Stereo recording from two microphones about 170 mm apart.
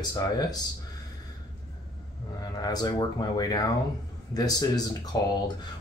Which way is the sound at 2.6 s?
25° left (ahead or behind).